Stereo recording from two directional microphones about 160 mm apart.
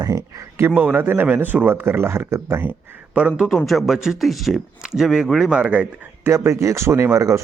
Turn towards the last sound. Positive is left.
turn(degrees=-20)  # may be behind; listen again after turning